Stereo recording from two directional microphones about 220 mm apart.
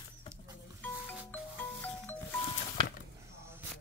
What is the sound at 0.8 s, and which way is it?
Music, 10° left (ahead or behind).